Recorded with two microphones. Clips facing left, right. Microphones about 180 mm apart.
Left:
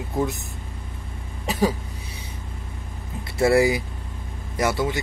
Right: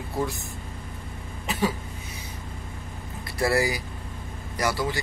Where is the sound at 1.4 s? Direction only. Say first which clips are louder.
Left 4 dB; 40° left (ahead or behind).